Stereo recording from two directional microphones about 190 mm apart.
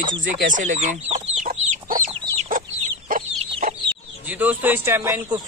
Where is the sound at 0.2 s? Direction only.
40° right (ahead or behind).